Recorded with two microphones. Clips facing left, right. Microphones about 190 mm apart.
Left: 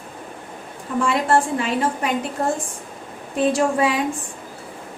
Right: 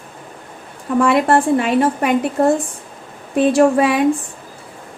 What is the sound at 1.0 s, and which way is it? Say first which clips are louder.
A woman's voice: right 5 dB; 60° right (ahead or behind).